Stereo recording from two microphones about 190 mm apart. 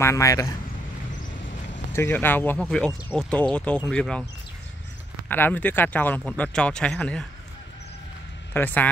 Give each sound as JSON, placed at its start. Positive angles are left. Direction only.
{"t": 0.0, "sound": "speech", "side_deg": 15}
{"t": 2.0, "sound": "speech", "side_deg": 10}
{"t": 5.3, "sound": "speech", "side_deg": 10}
{"t": 8.5, "sound": "speech", "side_deg": 10}